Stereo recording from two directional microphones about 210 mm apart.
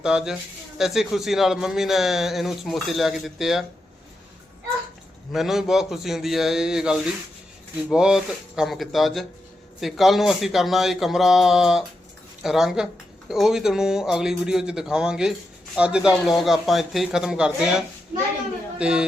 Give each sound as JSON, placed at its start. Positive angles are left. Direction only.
{"t": 0.0, "sound": "speech", "side_deg": -5}
{"t": 5.3, "sound": "speech", "side_deg": 0}